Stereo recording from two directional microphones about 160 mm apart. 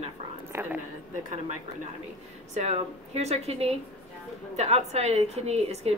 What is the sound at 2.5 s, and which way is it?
A woman's voice, 40° right (ahead or behind).